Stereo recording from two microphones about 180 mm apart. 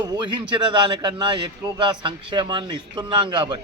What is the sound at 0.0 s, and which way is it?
A man's voice, 25° right (ahead or behind).